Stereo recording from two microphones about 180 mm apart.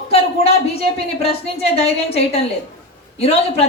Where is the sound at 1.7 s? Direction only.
35° left (ahead or behind).